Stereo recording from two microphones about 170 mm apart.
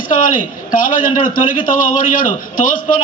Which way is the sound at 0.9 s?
50° left (ahead or behind).